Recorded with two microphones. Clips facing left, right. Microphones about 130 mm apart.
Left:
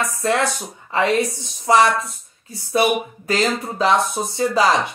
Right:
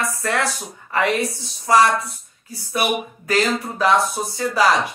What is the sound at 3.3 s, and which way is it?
A woman's voice, 25° left (ahead or behind).